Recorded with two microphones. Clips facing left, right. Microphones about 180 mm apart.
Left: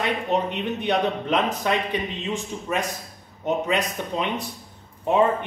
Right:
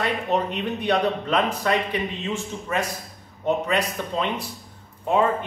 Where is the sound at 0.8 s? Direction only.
15° left (ahead or behind).